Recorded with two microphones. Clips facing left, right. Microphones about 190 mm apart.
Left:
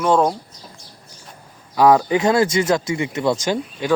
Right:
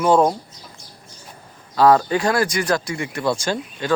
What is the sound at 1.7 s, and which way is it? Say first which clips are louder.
A man's voice: left 1 dB; 15° left (ahead or behind).